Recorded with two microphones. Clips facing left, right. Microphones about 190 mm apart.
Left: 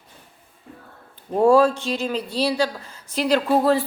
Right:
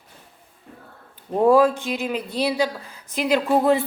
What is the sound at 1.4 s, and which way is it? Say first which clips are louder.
Speech: even; 15° right (ahead or behind).